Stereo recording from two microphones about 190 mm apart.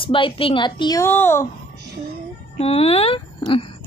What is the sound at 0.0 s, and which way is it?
Speech, 25° left (ahead or behind).